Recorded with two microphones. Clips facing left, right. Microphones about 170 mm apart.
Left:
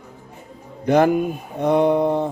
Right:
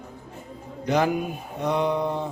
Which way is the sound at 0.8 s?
55° left (ahead or behind).